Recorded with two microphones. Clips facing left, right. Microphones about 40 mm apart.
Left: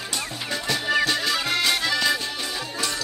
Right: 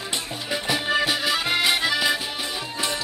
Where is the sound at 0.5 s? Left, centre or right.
Centre.